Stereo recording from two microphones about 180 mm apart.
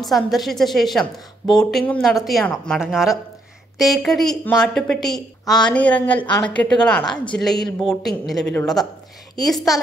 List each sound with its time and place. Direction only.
0.0 s a woman's voice: centre (ahead or behind)
5.4 s speech: 20° left (ahead or behind)
5.7 s a woman's voice: 5° left (ahead or behind)